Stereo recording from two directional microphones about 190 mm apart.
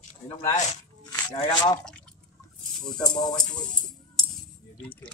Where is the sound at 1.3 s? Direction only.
20° left (ahead or behind).